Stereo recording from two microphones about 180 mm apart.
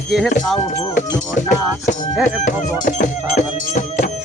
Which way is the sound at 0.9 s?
45° left (ahead or behind).